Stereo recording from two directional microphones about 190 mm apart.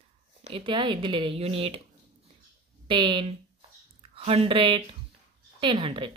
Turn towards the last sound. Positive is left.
turn(degrees=-30)  # may be behind; listen again after turning